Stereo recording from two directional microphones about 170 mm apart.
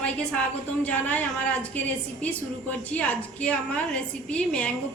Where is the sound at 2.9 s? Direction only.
10° left (ahead or behind).